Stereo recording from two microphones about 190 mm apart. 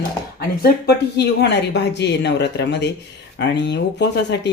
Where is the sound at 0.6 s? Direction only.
60° left (ahead or behind).